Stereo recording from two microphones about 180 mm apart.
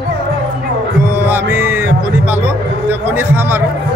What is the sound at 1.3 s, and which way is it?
Speech, 10° right (ahead or behind).